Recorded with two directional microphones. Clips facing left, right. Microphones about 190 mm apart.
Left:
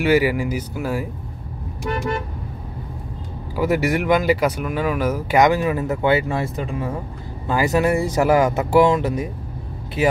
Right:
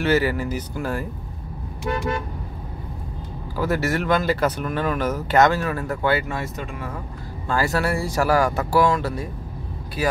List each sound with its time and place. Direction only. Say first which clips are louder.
0.0 s speech: left 3 dB; 10° left (ahead or behind)
3.5 s speech: left 3 dB; 15° left (ahead or behind)
7.4 s speech: left 4 dB; 15° left (ahead or behind)